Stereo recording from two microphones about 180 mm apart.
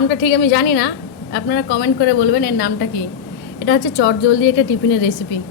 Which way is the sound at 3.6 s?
75° left (ahead or behind).